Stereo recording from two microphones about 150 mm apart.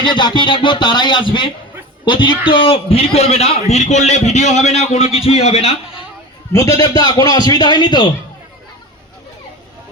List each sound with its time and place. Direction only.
0.0 s a man's voice: 30° left (ahead or behind)
6.5 s a man's voice: 20° left (ahead or behind)